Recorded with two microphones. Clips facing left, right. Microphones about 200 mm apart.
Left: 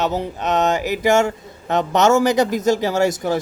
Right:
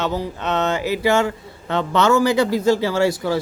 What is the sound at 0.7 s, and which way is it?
Speech, 45° left (ahead or behind).